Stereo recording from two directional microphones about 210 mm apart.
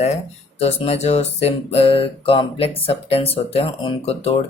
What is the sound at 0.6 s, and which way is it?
Speech, 30° left (ahead or behind).